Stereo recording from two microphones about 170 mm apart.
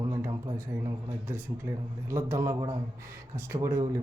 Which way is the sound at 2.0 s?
15° right (ahead or behind).